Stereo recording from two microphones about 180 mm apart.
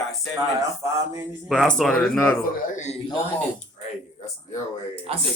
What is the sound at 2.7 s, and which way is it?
Speech, 40° left (ahead or behind).